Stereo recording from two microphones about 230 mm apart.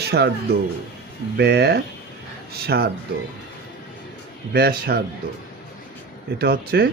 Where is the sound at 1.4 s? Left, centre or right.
Right.